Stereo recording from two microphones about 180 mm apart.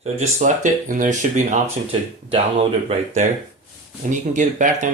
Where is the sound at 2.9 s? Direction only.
40° right (ahead or behind).